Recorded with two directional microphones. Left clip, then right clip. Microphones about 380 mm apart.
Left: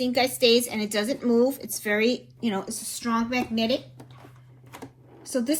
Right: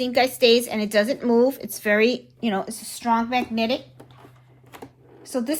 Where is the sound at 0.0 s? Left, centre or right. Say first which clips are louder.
Right 3 dB; right.